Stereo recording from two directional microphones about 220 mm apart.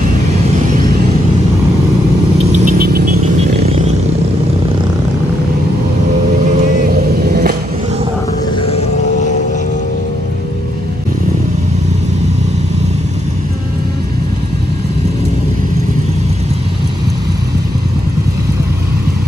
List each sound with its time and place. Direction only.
2.5 s vehicle: 40° right (ahead or behind)
3.5 s vehicle: 30° right (ahead or behind)
6.9 s vehicle: 45° right (ahead or behind)